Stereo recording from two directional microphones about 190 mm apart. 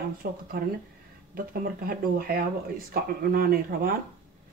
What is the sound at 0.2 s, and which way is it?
Speech, 50° right (ahead or behind).